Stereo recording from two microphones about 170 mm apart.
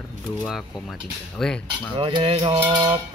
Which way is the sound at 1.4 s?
5° left (ahead or behind).